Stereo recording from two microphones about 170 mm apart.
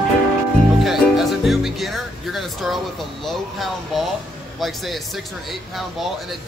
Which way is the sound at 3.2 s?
Centre (ahead or behind).